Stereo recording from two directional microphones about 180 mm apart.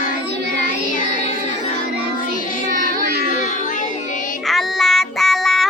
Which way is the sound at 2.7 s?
50° right (ahead or behind).